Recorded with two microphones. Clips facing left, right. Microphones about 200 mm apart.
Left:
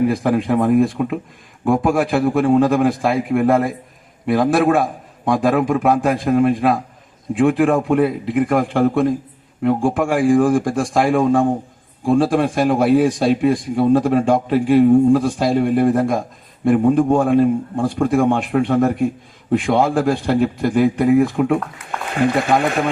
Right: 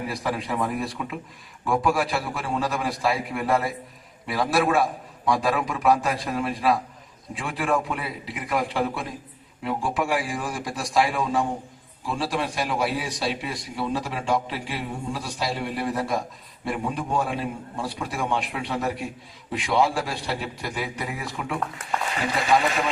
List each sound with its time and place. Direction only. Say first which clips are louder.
0.1 s a man's voice: left 11 dB; 55° left (ahead or behind)